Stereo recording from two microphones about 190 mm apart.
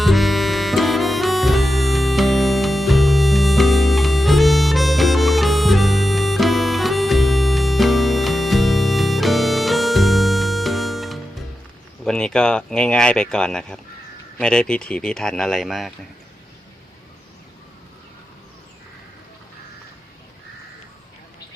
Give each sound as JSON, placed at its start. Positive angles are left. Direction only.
{"t": 0.0, "sound": "harmonica", "side_deg": 0}
{"t": 12.0, "sound": "speech", "side_deg": 5}